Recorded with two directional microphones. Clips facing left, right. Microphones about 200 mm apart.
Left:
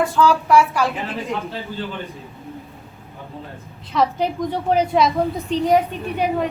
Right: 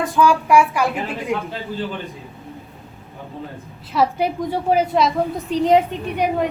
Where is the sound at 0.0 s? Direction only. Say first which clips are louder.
Even; 15° right (ahead or behind).